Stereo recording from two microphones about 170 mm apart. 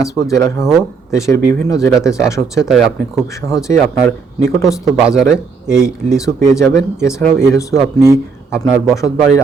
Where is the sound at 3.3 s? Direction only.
20° left (ahead or behind).